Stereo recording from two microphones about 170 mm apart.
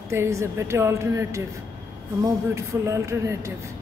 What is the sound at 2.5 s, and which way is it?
Speech, 15° right (ahead or behind).